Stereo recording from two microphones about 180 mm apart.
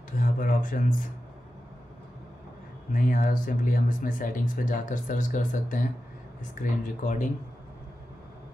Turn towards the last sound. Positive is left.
turn(degrees=45)  # may be behind; listen again after turning